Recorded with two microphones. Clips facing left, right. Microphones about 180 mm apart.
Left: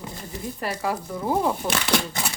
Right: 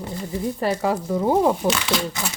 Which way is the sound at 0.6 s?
30° right (ahead or behind).